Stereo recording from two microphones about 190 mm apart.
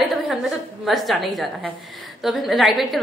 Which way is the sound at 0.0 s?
Centre (ahead or behind).